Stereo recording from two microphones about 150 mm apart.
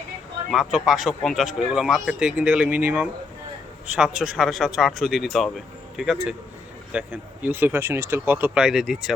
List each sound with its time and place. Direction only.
0.5 s speech: centre (ahead or behind)